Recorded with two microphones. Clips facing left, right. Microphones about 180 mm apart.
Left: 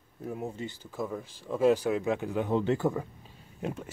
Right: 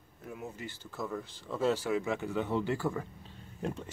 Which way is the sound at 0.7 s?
10° left (ahead or behind).